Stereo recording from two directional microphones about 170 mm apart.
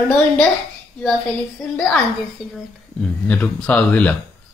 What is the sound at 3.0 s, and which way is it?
Speech, 5° left (ahead or behind).